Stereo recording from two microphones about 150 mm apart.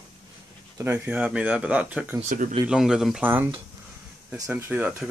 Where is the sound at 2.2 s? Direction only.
60° right (ahead or behind).